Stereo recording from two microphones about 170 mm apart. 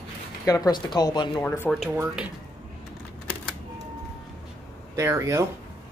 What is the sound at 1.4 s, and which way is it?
Speech, 10° left (ahead or behind).